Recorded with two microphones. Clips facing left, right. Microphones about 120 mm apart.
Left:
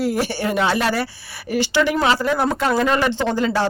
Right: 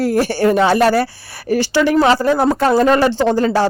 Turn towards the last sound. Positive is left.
turn(degrees=-40)  # may be behind; listen again after turning